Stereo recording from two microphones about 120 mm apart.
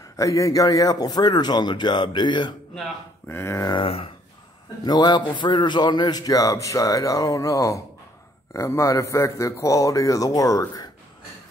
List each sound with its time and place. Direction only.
0.2 s a man's voice: 25° left (ahead or behind)
3.3 s a man's voice: 20° left (ahead or behind)
3.7 s speech: 50° left (ahead or behind)
4.8 s a man's voice: 35° left (ahead or behind)